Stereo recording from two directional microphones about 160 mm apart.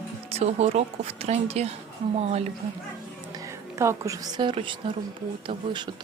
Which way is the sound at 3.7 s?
20° right (ahead or behind).